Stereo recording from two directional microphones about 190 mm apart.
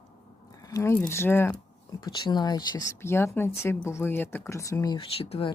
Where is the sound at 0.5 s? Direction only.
20° left (ahead or behind).